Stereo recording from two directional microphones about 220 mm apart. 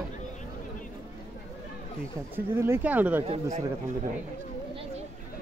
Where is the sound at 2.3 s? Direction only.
10° right (ahead or behind).